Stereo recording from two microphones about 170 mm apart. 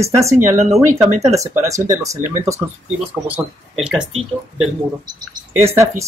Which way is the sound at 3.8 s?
5° right (ahead or behind).